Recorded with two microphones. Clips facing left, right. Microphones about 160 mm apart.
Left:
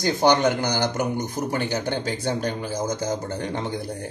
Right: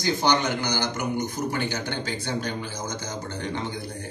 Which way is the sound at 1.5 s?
40° left (ahead or behind).